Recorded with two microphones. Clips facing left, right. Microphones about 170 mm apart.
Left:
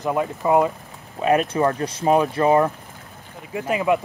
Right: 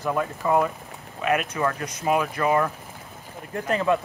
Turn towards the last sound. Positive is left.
turn(degrees=10)  # may be behind; listen again after turning